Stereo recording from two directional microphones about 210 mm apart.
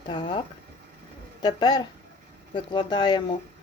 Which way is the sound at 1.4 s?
20° left (ahead or behind).